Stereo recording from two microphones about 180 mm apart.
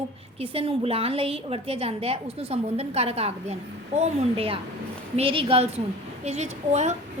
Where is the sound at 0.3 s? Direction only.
30° right (ahead or behind).